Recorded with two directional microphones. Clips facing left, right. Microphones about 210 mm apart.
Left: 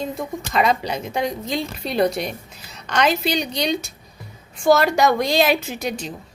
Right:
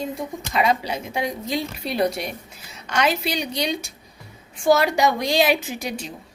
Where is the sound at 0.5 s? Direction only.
10° right (ahead or behind).